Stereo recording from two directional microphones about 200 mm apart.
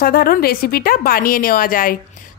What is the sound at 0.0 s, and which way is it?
A woman's voice, 45° left (ahead or behind).